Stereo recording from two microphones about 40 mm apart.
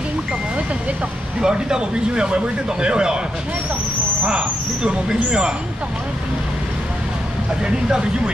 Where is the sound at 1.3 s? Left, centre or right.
Centre.